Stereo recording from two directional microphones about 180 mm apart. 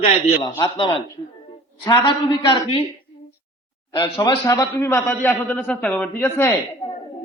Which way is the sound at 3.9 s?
20° left (ahead or behind).